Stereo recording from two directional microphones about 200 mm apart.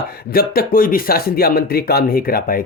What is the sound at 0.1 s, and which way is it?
A man's voice, 50° left (ahead or behind).